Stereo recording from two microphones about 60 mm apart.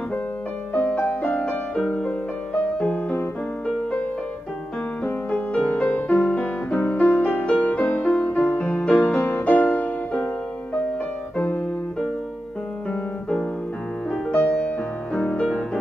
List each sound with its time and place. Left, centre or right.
0.7 s music: left
5.0 s music: centre
14.3 s music: left